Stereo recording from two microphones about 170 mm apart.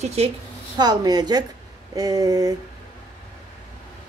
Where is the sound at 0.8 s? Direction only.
25° right (ahead or behind).